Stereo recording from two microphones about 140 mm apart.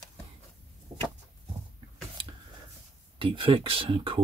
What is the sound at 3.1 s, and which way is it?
Speech, 40° right (ahead or behind).